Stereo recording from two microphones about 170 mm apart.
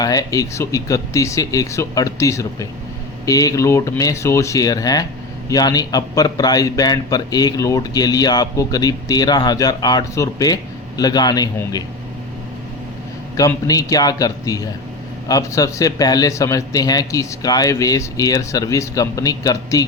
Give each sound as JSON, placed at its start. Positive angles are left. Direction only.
{"t": 0.0, "sound": "a man's voice", "side_deg": 20}
{"t": 13.3, "sound": "a man's voice", "side_deg": 20}